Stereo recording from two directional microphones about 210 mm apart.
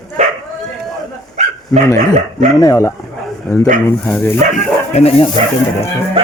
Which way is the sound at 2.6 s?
15° left (ahead or behind).